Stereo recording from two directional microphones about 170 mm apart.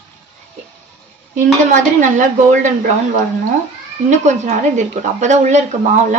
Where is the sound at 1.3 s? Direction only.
50° right (ahead or behind).